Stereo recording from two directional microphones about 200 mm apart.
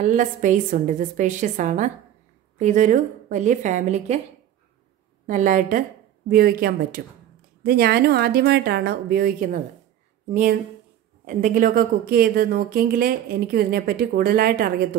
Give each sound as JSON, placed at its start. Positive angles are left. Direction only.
{"t": 0.0, "sound": "a woman's voice", "side_deg": -40}
{"t": 5.2, "sound": "a woman's voice", "side_deg": -40}
{"t": 11.2, "sound": "speech", "side_deg": -40}